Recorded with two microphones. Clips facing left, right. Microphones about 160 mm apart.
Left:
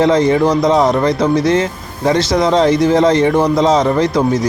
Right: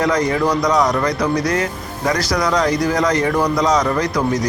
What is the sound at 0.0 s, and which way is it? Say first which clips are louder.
Speech: left 6 dB; 25° left (ahead or behind).